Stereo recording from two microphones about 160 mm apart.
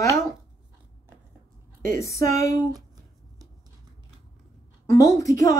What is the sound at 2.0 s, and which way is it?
Speech, 20° left (ahead or behind).